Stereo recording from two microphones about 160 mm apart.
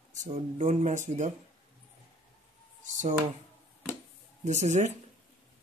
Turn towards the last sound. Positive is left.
turn(degrees=-45)  # may be behind; listen again after turning